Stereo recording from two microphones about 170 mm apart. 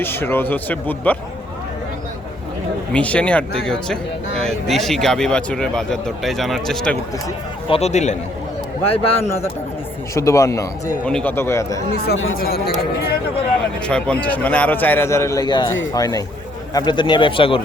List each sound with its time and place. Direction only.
0.0 s a man's voice: 15° left (ahead or behind)
2.9 s a man's voice: 5° left (ahead or behind)
7.7 s speech: 40° left (ahead or behind)
10.2 s a man's voice: 15° left (ahead or behind)
11.0 s a man's voice: 5° left (ahead or behind)
11.9 s speech: 70° left (ahead or behind)
13.8 s a man's voice: 5° left (ahead or behind); by 17.6 s 30° left (ahead or behind)